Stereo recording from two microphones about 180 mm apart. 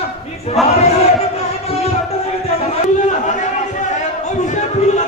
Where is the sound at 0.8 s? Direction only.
35° left (ahead or behind).